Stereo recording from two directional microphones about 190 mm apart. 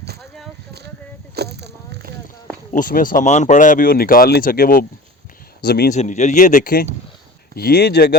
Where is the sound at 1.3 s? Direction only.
60° right (ahead or behind).